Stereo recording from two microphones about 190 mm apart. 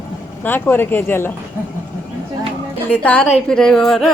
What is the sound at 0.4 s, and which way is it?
Speech, 10° left (ahead or behind).